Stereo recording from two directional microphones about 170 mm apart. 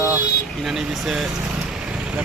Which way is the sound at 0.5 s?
Centre (ahead or behind).